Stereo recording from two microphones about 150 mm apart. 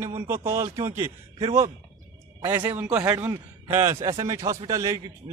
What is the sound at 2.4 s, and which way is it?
A man's voice, 15° right (ahead or behind).